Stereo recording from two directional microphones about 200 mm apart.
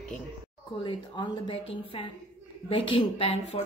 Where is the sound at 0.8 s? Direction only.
25° left (ahead or behind).